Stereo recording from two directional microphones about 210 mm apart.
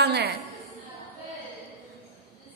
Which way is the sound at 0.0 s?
50° right (ahead or behind).